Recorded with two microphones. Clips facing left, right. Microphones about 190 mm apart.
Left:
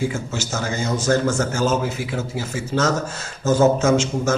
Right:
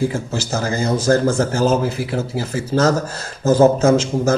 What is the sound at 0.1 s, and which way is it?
A man's voice, 35° right (ahead or behind).